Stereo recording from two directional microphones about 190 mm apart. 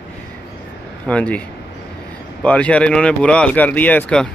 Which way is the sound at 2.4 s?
5° left (ahead or behind).